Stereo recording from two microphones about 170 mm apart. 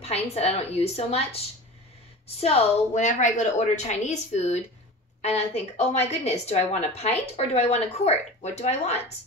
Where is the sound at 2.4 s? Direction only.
35° left (ahead or behind).